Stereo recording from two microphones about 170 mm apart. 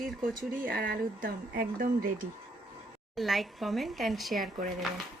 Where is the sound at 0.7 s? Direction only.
65° right (ahead or behind).